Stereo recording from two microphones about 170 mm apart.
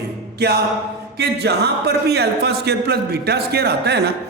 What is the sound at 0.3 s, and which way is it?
Music, 70° right (ahead or behind).